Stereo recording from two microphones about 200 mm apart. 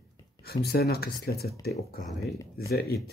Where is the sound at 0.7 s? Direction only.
50° left (ahead or behind).